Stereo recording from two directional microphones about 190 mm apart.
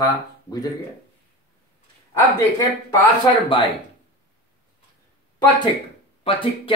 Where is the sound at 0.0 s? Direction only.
20° left (ahead or behind).